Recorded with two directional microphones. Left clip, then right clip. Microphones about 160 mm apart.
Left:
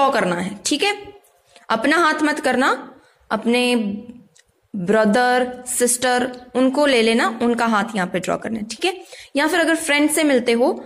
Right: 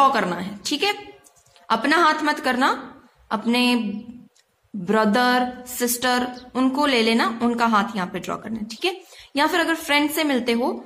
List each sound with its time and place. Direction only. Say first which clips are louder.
0.0 s speech: left 1 dB; 25° left (ahead or behind)
4.8 s speech: left 3 dB; 25° left (ahead or behind)